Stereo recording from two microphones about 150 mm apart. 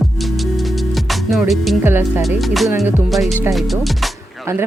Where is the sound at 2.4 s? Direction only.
Centre (ahead or behind).